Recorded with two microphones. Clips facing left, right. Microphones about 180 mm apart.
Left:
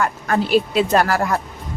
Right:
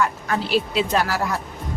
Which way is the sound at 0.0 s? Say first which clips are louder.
Left 3 dB; 50° left (ahead or behind).